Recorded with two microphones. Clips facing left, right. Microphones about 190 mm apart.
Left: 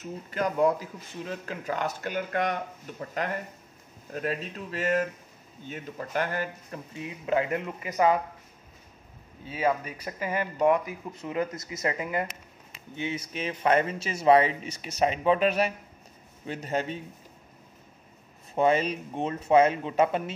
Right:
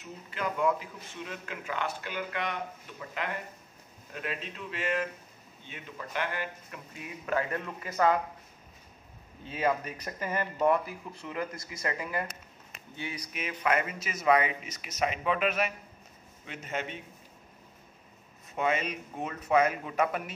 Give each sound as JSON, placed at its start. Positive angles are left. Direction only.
{"t": 0.0, "sound": "speech", "side_deg": 40}
{"t": 6.9, "sound": "speech", "side_deg": 25}
{"t": 9.5, "sound": "speech", "side_deg": 10}
{"t": 18.5, "sound": "speech", "side_deg": 30}